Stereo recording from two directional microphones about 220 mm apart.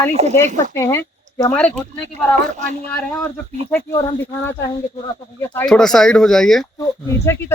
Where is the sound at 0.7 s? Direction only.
10° left (ahead or behind).